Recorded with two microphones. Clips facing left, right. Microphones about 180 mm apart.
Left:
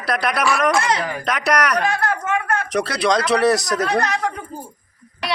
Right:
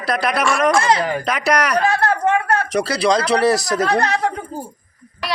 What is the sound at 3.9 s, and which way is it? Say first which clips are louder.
Speech: right 3 dB; 30° right (ahead or behind).